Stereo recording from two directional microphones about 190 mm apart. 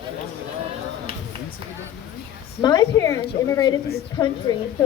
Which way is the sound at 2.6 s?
20° left (ahead or behind).